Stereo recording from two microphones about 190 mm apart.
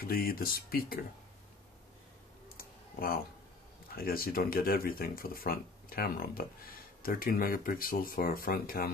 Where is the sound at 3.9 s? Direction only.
50° left (ahead or behind).